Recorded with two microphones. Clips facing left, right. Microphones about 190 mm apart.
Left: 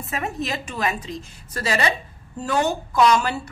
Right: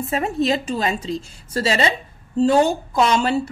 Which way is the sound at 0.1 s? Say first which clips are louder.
Right 7 dB; 30° right (ahead or behind).